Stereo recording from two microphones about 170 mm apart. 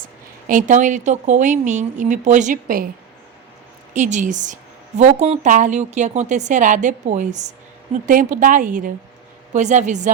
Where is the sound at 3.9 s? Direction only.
45° right (ahead or behind).